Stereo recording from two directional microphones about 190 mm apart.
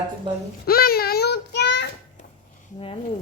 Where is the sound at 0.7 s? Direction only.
55° left (ahead or behind).